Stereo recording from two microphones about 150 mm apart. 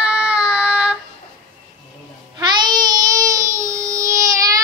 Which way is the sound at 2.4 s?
30° right (ahead or behind).